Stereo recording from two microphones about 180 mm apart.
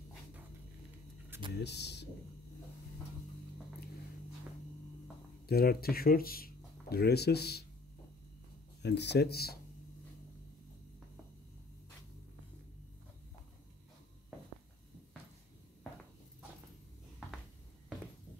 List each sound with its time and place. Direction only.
1.6 s speech: 70° left (ahead or behind)
5.5 s speech: 60° left (ahead or behind)
8.8 s speech: 70° left (ahead or behind)